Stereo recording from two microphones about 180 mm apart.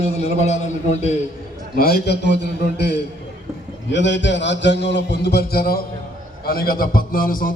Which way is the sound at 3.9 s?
80° left.